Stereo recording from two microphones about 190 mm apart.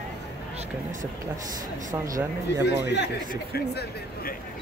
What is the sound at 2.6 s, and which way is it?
Speech, 65° left (ahead or behind).